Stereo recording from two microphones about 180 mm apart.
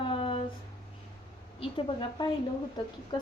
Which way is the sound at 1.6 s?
30° left (ahead or behind).